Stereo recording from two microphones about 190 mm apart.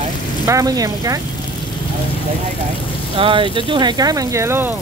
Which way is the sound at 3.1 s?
25° right (ahead or behind).